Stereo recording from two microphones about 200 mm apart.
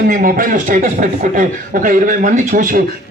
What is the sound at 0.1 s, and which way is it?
A man's voice, 45° right (ahead or behind).